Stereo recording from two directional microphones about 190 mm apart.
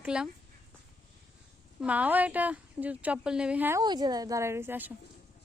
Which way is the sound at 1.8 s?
10° right (ahead or behind).